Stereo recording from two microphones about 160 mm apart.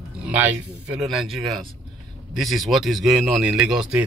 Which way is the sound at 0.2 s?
10° right (ahead or behind).